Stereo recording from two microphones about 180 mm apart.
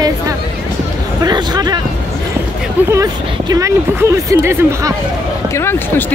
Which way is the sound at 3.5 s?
15° right (ahead or behind).